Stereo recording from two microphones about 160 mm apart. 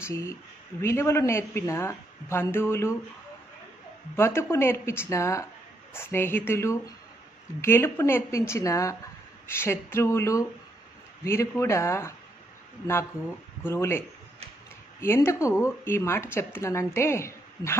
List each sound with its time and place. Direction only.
0.0 s a man's voice: 15° left (ahead or behind)
4.2 s a man's voice: 15° left (ahead or behind)
13.7 s a man's voice: 15° left (ahead or behind)